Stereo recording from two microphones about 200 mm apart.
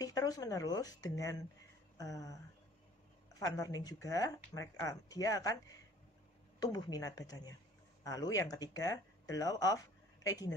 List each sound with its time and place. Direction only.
0.0 s speech: 20° left (ahead or behind)
2.0 s a sound: 15° left (ahead or behind)
3.3 s speech: 15° left (ahead or behind)
6.6 s speech: 20° left (ahead or behind)